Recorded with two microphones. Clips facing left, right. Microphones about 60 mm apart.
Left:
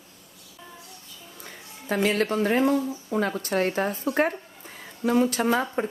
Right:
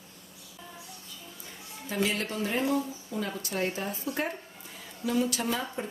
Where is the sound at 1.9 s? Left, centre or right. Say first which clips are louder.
Left 7 dB; left.